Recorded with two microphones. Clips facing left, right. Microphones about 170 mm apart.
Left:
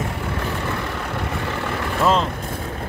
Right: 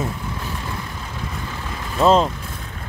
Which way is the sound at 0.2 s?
75° left (ahead or behind).